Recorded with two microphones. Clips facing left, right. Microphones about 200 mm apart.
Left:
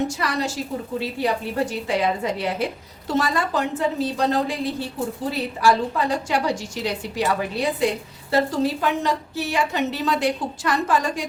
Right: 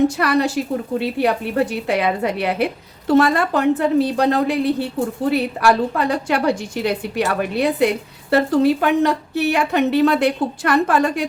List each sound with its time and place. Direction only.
0.2 s a woman's voice: 60° right (ahead or behind)